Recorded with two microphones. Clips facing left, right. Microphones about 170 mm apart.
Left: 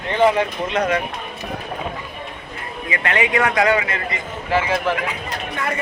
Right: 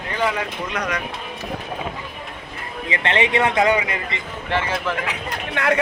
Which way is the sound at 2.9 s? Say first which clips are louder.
Even; 30° right (ahead or behind).